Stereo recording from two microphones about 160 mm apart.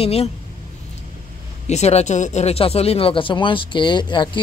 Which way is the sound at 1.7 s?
45° left (ahead or behind).